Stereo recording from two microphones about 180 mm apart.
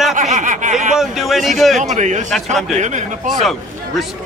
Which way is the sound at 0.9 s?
Centre (ahead or behind).